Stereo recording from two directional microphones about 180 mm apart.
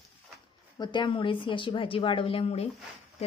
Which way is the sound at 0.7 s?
25° left (ahead or behind).